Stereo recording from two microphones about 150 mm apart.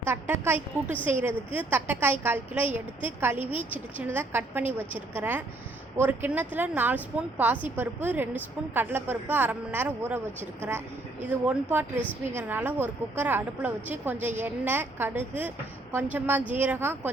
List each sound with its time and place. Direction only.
0.0 s a woman's voice: 15° right (ahead or behind)
12.3 s a woman's voice: 15° right (ahead or behind)